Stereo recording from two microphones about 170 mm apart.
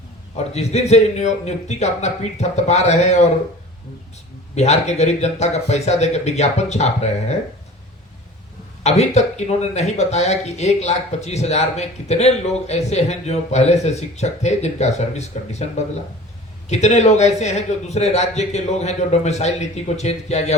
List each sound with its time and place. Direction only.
0.3 s speech: 40° left (ahead or behind)
4.5 s speech: 40° left (ahead or behind)
8.8 s speech: 40° left (ahead or behind)